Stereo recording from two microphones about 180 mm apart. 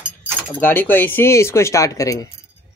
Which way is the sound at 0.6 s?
10° left (ahead or behind).